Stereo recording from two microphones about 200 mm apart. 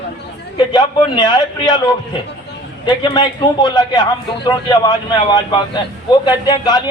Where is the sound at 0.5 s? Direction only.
20° left (ahead or behind).